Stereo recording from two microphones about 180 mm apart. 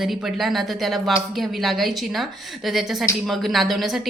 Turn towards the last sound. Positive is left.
turn(degrees=0)  # may be behind; listen again after turning